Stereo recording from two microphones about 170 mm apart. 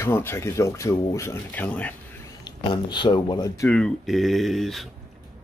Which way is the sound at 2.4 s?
25° left (ahead or behind).